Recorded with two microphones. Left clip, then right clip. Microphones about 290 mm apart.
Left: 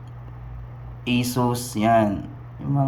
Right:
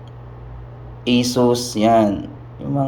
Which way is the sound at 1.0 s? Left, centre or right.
Left.